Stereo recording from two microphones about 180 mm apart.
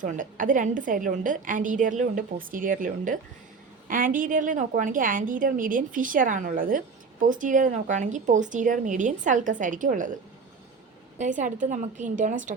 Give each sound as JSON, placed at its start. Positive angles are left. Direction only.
{"t": 0.0, "sound": "a woman's voice", "side_deg": -45}
{"t": 11.2, "sound": "a woman's voice", "side_deg": -45}